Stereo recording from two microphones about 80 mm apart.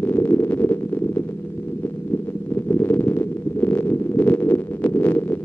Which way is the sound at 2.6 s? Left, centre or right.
Left.